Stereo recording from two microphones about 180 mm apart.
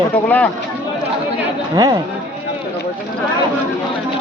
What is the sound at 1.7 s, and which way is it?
Speech, 20° right (ahead or behind).